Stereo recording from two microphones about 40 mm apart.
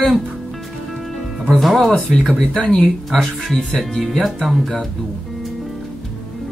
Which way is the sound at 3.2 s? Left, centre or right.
Left.